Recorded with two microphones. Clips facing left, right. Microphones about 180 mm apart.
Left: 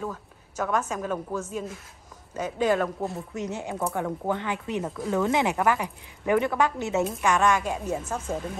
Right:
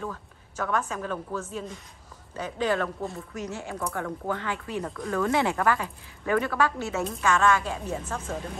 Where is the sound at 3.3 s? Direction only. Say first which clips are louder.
Left 3 dB; 20° left (ahead or behind).